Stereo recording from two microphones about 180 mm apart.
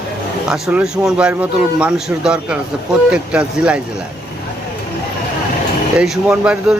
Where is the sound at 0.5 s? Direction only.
5° right (ahead or behind).